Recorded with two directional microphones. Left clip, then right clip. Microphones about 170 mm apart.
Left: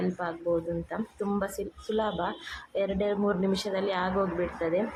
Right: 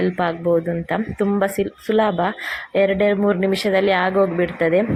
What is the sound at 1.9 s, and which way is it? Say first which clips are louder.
Speech: right 11 dB; 30° right (ahead or behind).